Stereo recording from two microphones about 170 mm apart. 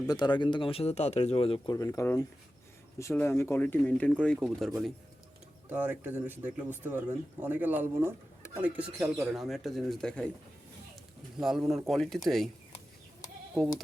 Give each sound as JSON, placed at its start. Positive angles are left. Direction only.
{"t": 0.1, "sound": "speech", "side_deg": 25}
{"t": 5.6, "sound": "speech", "side_deg": -10}
{"t": 11.3, "sound": "speech", "side_deg": 0}
{"t": 13.5, "sound": "speech", "side_deg": 0}